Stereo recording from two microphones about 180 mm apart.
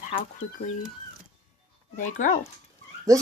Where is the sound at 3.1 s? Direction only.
15° right (ahead or behind).